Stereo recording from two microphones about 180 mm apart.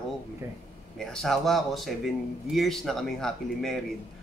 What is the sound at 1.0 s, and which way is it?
A man's voice, centre (ahead or behind).